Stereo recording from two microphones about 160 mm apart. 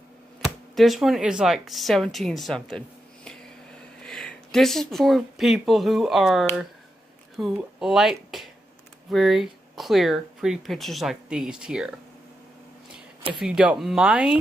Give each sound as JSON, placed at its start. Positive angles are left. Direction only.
{"t": 0.7, "sound": "speech", "side_deg": 0}
{"t": 4.0, "sound": "speech", "side_deg": 5}
{"t": 13.4, "sound": "speech", "side_deg": -5}